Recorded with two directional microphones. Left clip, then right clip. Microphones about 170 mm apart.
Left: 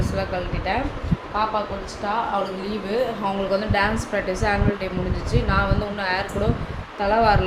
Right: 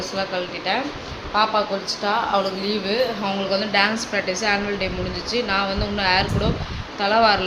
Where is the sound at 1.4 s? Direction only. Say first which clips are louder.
Right 4 dB; 30° right (ahead or behind).